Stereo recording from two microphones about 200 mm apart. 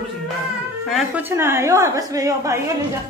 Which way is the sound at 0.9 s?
10° right (ahead or behind).